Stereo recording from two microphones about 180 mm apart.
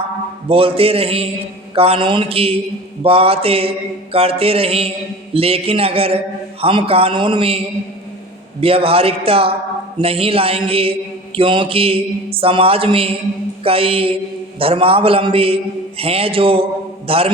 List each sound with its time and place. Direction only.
0.4 s a man's voice: 30° right (ahead or behind)
8.6 s a man's voice: 30° right (ahead or behind)